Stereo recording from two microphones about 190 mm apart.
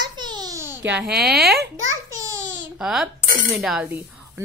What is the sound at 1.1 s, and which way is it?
Speech, 55° right (ahead or behind).